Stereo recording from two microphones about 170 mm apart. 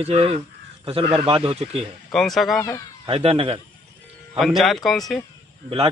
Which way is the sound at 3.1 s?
35° right (ahead or behind).